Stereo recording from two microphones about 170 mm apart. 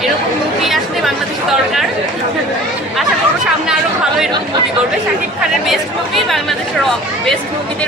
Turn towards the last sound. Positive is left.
turn(degrees=0)  # may be behind; listen again after turning